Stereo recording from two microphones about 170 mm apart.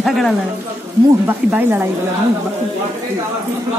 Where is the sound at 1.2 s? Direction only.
10° right (ahead or behind).